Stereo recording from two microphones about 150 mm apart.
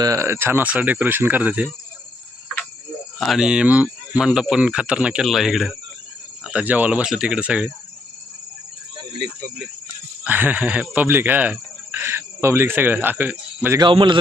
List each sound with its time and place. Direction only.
0.0 s speech: 20° right (ahead or behind)
3.2 s speech: centre (ahead or behind)
10.2 s speech: 10° right (ahead or behind)
13.7 s a man's voice: 30° right (ahead or behind)